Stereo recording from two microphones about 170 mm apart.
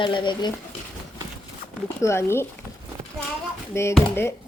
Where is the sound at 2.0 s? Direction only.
15° left (ahead or behind).